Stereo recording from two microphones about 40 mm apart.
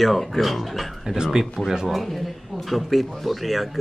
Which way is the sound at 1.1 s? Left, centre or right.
Centre.